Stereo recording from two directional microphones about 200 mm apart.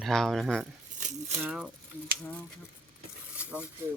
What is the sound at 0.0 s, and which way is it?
Speech, centre (ahead or behind).